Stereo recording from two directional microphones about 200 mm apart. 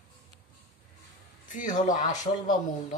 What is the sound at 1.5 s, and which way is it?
Speech, 40° left (ahead or behind).